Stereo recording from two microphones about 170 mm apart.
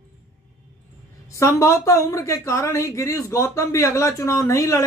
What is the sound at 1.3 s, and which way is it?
Speech, 15° left (ahead or behind).